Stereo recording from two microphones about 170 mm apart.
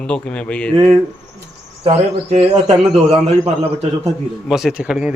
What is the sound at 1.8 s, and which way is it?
A man's voice, 35° right (ahead or behind).